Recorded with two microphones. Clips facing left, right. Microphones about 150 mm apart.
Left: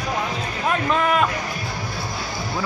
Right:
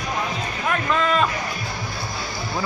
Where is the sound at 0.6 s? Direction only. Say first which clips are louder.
Left 2 dB; 20° left (ahead or behind).